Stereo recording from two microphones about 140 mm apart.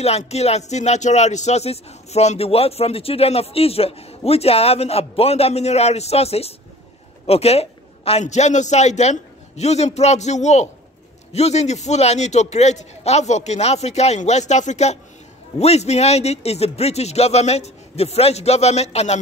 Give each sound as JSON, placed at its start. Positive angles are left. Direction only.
{"t": 0.0, "sound": "a man's voice", "side_deg": 50}